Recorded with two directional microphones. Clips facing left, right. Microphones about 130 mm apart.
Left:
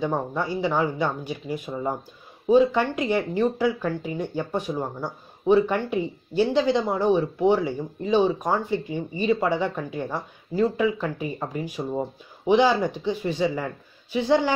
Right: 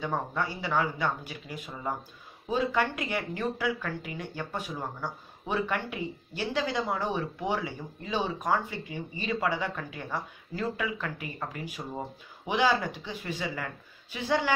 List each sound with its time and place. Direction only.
0.0 s speech: 20° left (ahead or behind)